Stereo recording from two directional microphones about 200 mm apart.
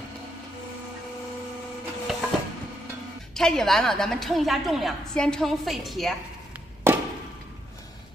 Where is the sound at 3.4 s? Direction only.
Centre (ahead or behind).